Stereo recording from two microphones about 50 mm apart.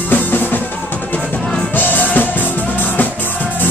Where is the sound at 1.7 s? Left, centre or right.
Left.